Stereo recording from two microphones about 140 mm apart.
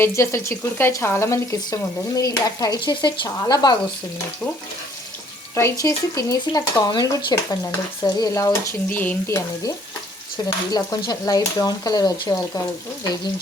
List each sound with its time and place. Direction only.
0.0 s speech: 20° left (ahead or behind)
5.5 s speech: 20° left (ahead or behind)